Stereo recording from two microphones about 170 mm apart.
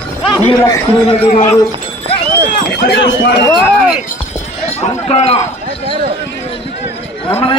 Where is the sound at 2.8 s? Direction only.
85° left.